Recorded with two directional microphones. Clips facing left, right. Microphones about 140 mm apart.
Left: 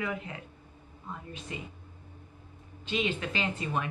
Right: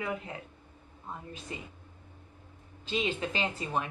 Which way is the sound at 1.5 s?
30° right (ahead or behind).